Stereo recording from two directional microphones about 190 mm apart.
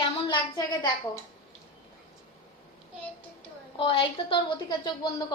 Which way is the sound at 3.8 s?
30° left (ahead or behind).